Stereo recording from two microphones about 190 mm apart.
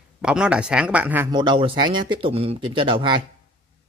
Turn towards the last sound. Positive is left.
turn(degrees=-25)  # may be behind; listen again after turning